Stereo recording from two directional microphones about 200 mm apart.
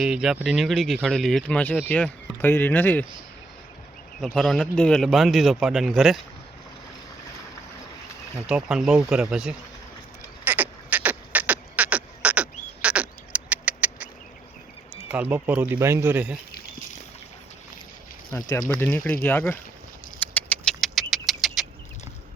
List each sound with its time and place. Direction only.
0.0 s speech: 5° right (ahead or behind)
4.4 s speech: centre (ahead or behind)
8.4 s speech: 5° right (ahead or behind)
10.4 s beatboxing: 10° right (ahead or behind)
15.1 s speech: 10° right (ahead or behind)
18.3 s speech: 15° left (ahead or behind)
20.1 s vehicle: 10° left (ahead or behind)